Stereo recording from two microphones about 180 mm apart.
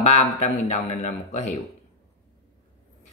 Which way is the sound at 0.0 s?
40° left (ahead or behind).